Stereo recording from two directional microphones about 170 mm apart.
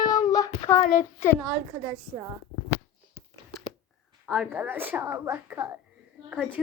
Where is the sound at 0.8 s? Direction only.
45° left (ahead or behind).